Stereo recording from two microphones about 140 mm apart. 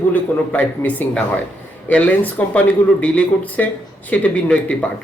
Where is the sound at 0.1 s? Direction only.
10° left (ahead or behind).